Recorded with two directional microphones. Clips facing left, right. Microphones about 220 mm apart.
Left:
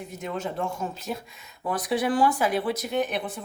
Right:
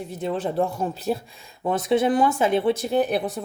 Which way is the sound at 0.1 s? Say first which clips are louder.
Right 6 dB; 30° right (ahead or behind).